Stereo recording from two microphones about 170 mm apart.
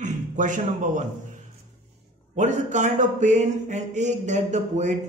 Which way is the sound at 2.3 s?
45° right (ahead or behind).